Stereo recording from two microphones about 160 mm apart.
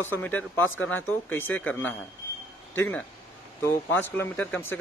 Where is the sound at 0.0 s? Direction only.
10° left (ahead or behind).